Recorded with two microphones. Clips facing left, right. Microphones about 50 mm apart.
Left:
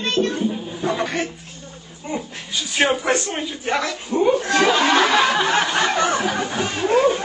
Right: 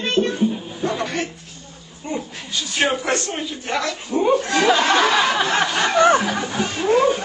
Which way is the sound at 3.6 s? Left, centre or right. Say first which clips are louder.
Left 2 dB; centre.